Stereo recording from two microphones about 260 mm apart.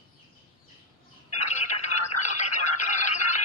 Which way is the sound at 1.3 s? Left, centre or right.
Left.